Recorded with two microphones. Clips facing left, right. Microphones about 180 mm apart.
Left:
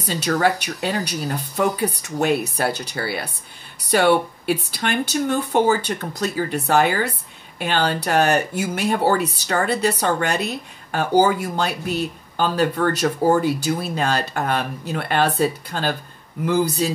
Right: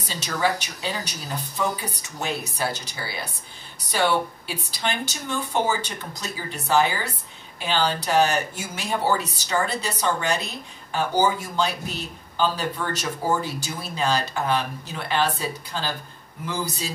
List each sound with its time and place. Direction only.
0.1 s speech: 55° left (ahead or behind)